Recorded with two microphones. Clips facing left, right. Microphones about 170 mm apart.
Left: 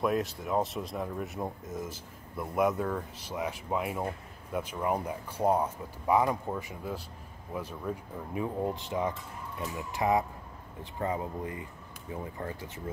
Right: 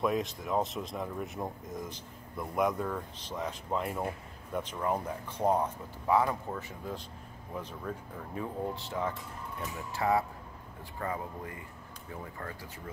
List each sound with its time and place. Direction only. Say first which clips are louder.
0.0 s speech: left 1 dB; centre (ahead or behind); by 12.8 s 20° left (ahead or behind)